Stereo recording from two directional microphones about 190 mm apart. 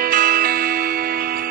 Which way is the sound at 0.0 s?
50° right (ahead or behind).